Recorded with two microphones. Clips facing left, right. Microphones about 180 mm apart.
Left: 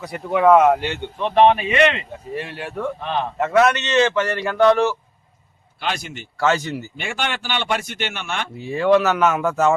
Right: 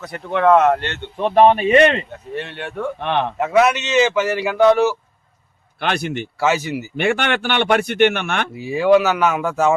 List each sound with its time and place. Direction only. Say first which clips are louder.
0.0 s speech: even; 10° left (ahead or behind)
1.2 s speech: right 2 dB; 40° right (ahead or behind)
2.3 s speech: right 1 dB; 5° left (ahead or behind)
3.0 s speech: right 4 dB; 70° right (ahead or behind)
3.3 s speech: even; 5° right (ahead or behind)
5.8 s speech: right 5 dB; 60° right (ahead or behind)
6.4 s speech: even; 5° right (ahead or behind)
6.9 s speech: right 12 dB; 60° right (ahead or behind)
8.5 s speech: right 2 dB; 5° right (ahead or behind)